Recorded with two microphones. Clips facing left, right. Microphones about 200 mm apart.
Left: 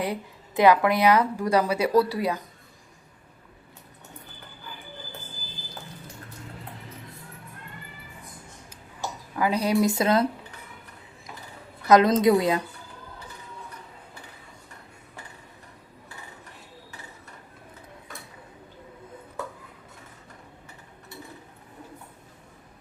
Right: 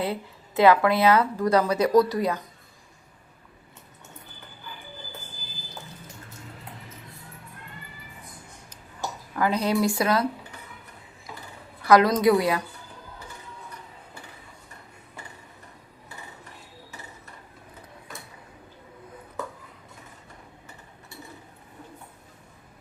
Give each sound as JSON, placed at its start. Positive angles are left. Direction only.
{"t": 0.0, "sound": "speech", "side_deg": 15}
{"t": 9.3, "sound": "speech", "side_deg": 10}
{"t": 11.9, "sound": "speech", "side_deg": 20}